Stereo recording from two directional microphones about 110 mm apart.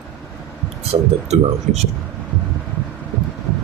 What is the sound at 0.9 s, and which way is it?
Speech, 85° right.